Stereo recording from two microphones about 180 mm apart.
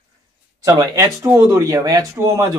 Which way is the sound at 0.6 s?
15° right (ahead or behind).